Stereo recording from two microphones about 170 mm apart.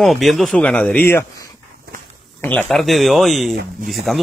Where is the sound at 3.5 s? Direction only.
65° right (ahead or behind).